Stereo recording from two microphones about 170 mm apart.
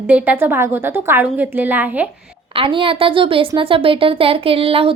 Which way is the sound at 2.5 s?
30° right (ahead or behind).